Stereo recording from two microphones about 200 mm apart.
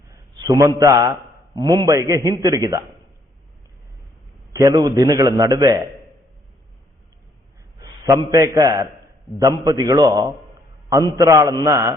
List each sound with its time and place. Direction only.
0.1 s a man's voice: 15° right (ahead or behind)
4.5 s a man's voice: 20° right (ahead or behind)
8.0 s a man's voice: 15° right (ahead or behind)